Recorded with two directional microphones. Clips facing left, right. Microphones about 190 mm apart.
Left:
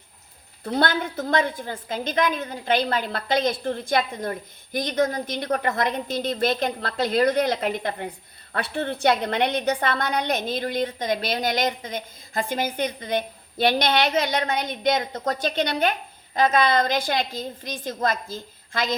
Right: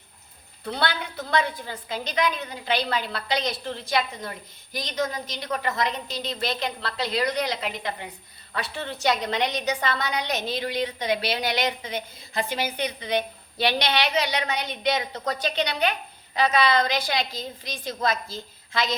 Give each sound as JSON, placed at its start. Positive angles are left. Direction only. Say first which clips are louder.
{"t": 0.6, "sound": "a woman's voice", "louder": "left 5 dB", "side_deg": 45}